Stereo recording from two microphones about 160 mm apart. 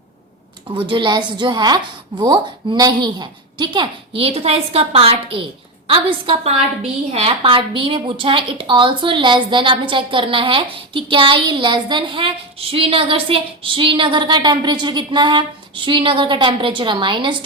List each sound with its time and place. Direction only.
0.9 s a woman's voice: 30° right (ahead or behind)